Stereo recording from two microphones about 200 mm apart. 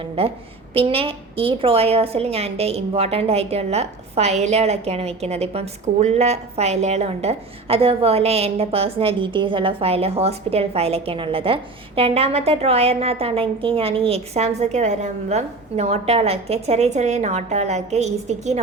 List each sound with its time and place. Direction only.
0.0 s a woman's voice: 30° right (ahead or behind)